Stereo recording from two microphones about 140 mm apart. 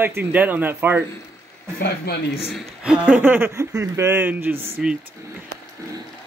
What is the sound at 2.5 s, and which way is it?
Speech, centre (ahead or behind).